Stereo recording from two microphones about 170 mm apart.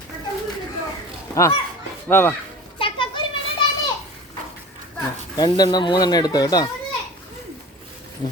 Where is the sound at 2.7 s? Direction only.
30° left (ahead or behind).